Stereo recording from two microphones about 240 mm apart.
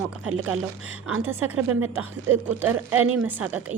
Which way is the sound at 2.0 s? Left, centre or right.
Centre.